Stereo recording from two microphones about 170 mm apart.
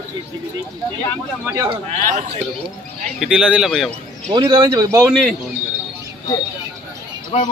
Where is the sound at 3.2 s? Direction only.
5° right (ahead or behind).